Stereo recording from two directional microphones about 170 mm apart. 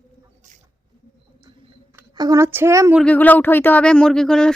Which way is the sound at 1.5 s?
20° right (ahead or behind).